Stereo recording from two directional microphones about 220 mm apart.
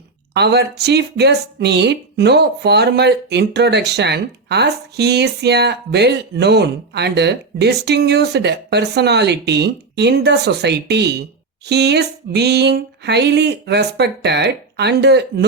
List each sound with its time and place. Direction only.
0.3 s speech: 50° right (ahead or behind)